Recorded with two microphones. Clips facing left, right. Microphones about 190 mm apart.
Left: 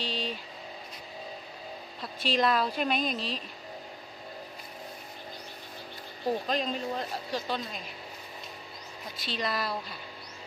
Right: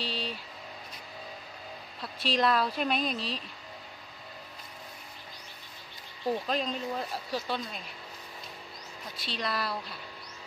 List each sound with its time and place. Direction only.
0.0 s vehicle: centre (ahead or behind)
2.0 s a woman's voice: centre (ahead or behind)
6.4 s a woman's voice: centre (ahead or behind)
9.2 s a woman's voice: centre (ahead or behind)